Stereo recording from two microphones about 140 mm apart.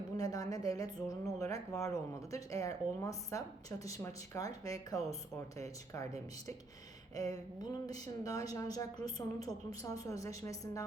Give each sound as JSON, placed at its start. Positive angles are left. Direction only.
{"t": 0.2, "sound": "speech", "side_deg": 25}
{"t": 7.2, "sound": "speech", "side_deg": 25}